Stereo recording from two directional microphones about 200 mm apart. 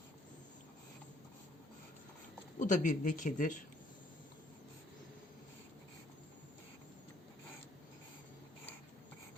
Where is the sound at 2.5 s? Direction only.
40° left (ahead or behind).